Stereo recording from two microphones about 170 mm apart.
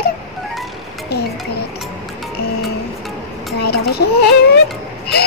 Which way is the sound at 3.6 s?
70° left (ahead or behind).